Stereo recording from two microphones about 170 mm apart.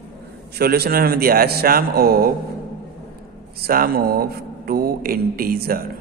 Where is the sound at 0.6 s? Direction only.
65° right (ahead or behind).